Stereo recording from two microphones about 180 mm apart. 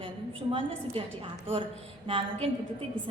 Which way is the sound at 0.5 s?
30° right (ahead or behind).